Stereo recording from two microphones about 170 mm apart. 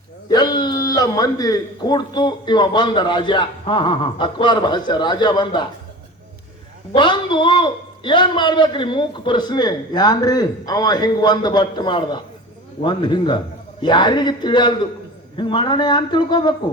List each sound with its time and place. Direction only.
0.3 s a man's voice: 25° left (ahead or behind)
6.9 s a man's voice: 30° left (ahead or behind)